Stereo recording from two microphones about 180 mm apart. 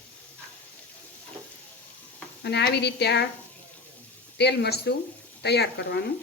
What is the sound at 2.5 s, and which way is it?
Speech, 65° left (ahead or behind).